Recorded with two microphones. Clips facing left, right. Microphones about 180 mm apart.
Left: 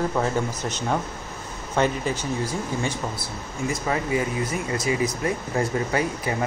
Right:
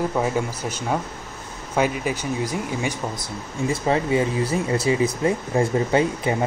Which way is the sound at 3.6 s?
30° right (ahead or behind).